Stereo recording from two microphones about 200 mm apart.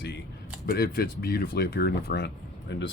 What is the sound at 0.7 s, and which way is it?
Speech, 50° left (ahead or behind).